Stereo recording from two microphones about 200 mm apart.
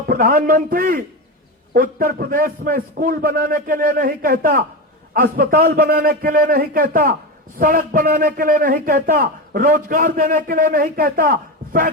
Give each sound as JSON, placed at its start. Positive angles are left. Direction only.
{"t": 0.1, "sound": "a man's voice", "side_deg": -45}